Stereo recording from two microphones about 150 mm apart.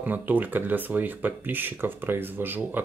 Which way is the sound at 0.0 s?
10° right (ahead or behind).